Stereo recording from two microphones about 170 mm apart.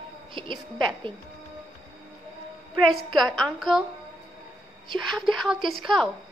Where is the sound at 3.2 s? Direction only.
Centre (ahead or behind).